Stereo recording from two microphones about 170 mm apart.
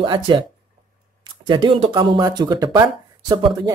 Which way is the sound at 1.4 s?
30° right (ahead or behind).